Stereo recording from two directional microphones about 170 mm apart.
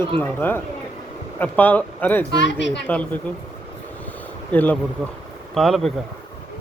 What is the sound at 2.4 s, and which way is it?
Speech, 90° left.